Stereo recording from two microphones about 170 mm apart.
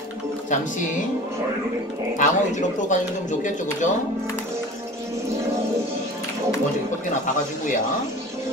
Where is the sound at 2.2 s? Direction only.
45° left (ahead or behind).